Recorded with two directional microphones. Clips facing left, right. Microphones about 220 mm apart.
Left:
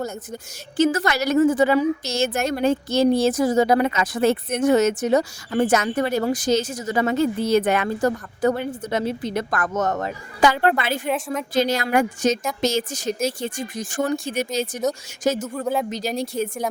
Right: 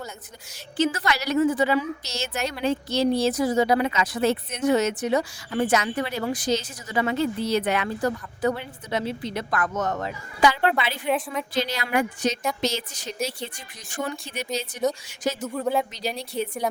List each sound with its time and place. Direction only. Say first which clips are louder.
0.8 s a woman's voice: left 5 dB; 45° left (ahead or behind)
15.5 s speech: left 1 dB; centre (ahead or behind)
15.9 s a woman's voice: left 6 dB; 45° left (ahead or behind)